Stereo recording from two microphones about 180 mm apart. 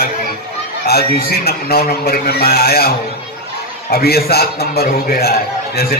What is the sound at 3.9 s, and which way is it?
A man's voice, 60° left (ahead or behind).